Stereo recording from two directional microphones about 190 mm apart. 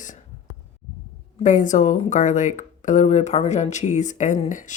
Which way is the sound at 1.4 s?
40° left (ahead or behind).